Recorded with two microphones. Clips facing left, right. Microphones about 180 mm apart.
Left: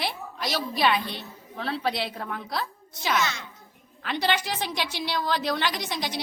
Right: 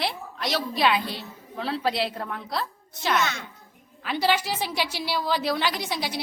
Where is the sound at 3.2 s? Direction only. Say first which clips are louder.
Right 1 dB; 55° right (ahead or behind).